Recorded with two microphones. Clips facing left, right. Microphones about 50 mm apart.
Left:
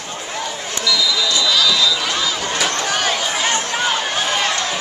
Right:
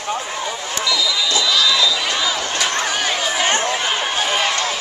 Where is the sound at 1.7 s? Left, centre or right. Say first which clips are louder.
Even; centre.